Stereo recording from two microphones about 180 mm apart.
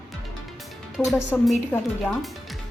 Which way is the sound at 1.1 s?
Centre (ahead or behind).